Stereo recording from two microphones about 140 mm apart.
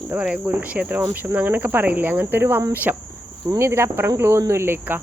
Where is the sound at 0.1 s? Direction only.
10° right (ahead or behind).